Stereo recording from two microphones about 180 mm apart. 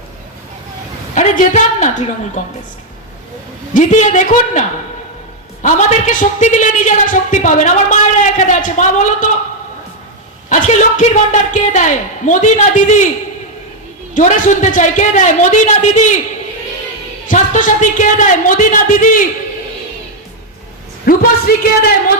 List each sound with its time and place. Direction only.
1.1 s a woman's voice: 40° left (ahead or behind)
3.8 s a woman's voice: 40° left (ahead or behind)
5.6 s a woman's voice: 45° left (ahead or behind)
10.5 s a woman's voice: 45° left (ahead or behind)
14.2 s a woman's voice: 45° left (ahead or behind)
17.2 s a woman's voice: 45° left (ahead or behind)
21.0 s a woman's voice: 55° left (ahead or behind)